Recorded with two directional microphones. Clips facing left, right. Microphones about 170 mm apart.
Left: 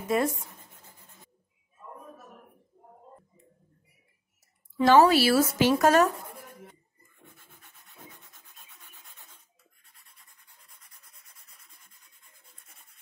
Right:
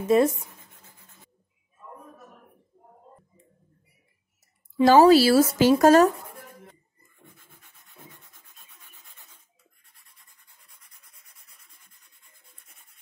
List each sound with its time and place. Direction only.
0.1 s speech: 25° right (ahead or behind)
4.8 s speech: 35° right (ahead or behind)